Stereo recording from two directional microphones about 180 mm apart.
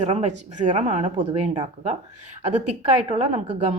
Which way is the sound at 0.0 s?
35° right (ahead or behind).